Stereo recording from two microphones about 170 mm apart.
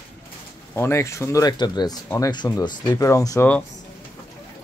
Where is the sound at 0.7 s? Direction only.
15° left (ahead or behind).